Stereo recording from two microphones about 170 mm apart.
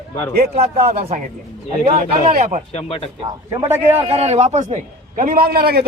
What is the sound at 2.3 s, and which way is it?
Speech, 45° right (ahead or behind).